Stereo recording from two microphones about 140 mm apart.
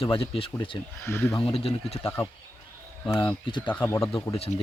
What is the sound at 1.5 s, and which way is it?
Speech, 45° left (ahead or behind).